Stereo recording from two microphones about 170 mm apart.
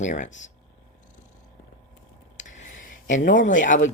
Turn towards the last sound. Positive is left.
turn(degrees=50)  # may be behind; listen again after turning